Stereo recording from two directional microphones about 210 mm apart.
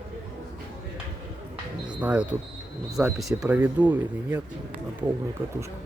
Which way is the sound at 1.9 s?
5° right (ahead or behind).